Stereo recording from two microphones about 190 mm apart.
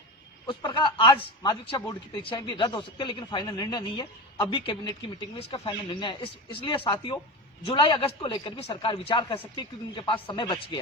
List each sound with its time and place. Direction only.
0.4 s a man's voice: 25° left (ahead or behind)